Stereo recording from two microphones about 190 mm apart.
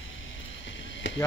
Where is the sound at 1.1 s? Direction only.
75° left (ahead or behind).